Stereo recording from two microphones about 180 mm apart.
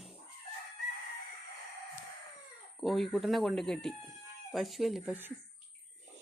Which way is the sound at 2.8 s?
Centre (ahead or behind).